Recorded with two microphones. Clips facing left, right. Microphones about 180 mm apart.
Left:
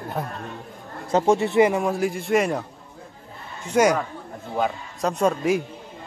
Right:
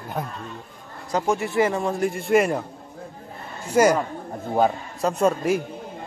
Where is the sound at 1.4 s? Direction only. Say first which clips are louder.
Left 3 dB; 20° left (ahead or behind).